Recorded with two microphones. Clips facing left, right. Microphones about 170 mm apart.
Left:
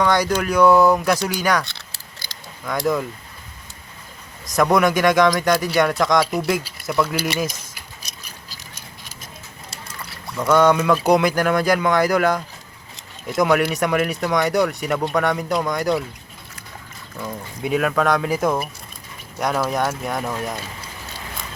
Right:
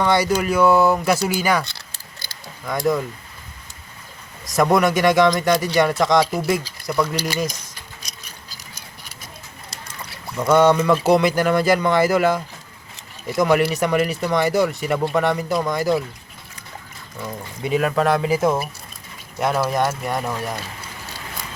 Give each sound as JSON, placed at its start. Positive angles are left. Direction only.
{"t": 0.0, "sound": "speech", "side_deg": -5}
{"t": 4.4, "sound": "speech", "side_deg": 0}
{"t": 10.3, "sound": "speech", "side_deg": -15}
{"t": 10.6, "sound": "speech", "side_deg": 0}
{"t": 13.4, "sound": "speech", "side_deg": -5}
{"t": 17.6, "sound": "speech", "side_deg": 0}